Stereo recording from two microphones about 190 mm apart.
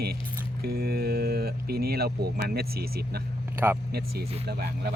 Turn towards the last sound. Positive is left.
turn(degrees=-55)  # may be behind; listen again after turning